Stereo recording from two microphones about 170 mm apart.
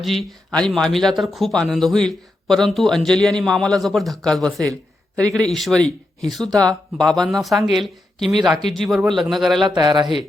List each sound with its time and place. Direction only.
0.0 s speech: centre (ahead or behind)
9.6 s speech: 25° right (ahead or behind)